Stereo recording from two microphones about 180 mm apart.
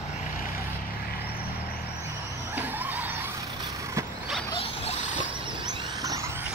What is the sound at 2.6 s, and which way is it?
Vehicle, 10° right (ahead or behind).